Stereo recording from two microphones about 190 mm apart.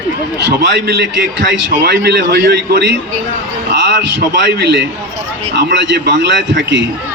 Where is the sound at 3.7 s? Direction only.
70° right (ahead or behind).